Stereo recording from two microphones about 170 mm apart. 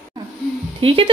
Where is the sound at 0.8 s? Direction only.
30° right (ahead or behind).